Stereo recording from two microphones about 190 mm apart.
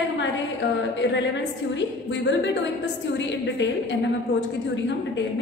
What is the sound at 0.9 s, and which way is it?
A woman's voice, 65° left (ahead or behind).